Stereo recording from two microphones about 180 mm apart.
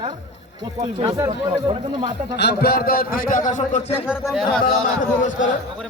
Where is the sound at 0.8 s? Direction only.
25° right (ahead or behind).